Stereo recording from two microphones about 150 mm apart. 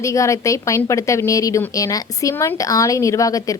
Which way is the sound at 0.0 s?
20° left (ahead or behind).